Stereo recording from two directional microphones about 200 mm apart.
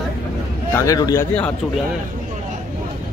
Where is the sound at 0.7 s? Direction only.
15° left (ahead or behind).